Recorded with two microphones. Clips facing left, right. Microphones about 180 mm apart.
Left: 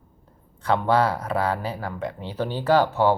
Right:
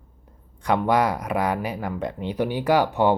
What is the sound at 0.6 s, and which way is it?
Speech, 15° right (ahead or behind).